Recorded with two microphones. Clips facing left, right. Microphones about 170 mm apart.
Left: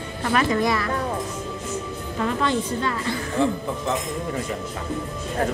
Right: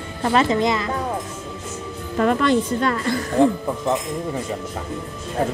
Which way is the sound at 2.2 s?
60° right (ahead or behind).